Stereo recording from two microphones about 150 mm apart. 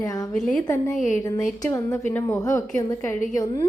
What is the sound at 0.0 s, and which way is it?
Speech, 20° left (ahead or behind).